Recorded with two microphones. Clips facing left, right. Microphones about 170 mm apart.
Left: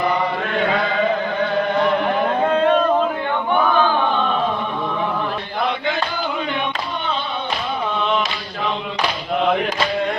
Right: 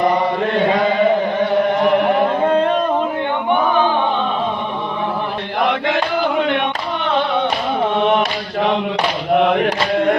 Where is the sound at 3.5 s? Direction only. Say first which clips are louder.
Right 1 dB; 15° right (ahead or behind).